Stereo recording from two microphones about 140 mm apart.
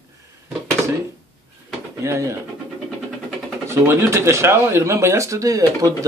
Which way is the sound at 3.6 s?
20° right (ahead or behind).